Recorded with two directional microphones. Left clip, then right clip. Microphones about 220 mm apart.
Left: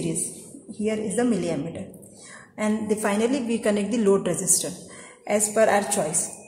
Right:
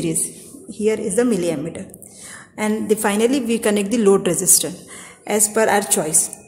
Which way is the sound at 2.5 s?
50° right (ahead or behind).